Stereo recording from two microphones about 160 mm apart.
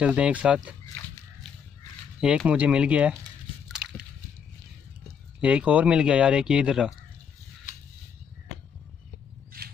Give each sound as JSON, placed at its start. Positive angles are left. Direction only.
{"t": 0.0, "sound": "speech", "side_deg": -10}
{"t": 2.1, "sound": "speech", "side_deg": -5}
{"t": 5.4, "sound": "speech", "side_deg": -10}
{"t": 9.5, "sound": "a sound", "side_deg": -65}